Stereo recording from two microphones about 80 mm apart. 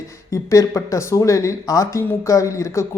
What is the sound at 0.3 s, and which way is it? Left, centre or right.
Speech, left.